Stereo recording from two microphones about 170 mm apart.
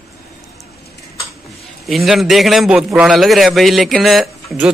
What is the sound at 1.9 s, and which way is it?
A man's voice, centre (ahead or behind).